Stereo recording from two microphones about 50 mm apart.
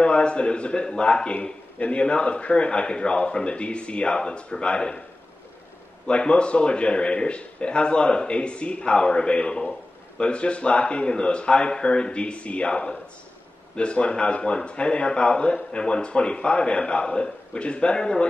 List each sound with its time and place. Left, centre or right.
0.0 s a man's voice: left
6.0 s a man's voice: left